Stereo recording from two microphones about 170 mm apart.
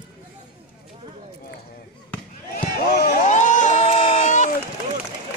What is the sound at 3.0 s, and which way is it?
Crowd, 50° left (ahead or behind).